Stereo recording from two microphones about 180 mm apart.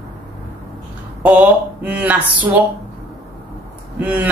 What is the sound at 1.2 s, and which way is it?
Speech, 5° right (ahead or behind).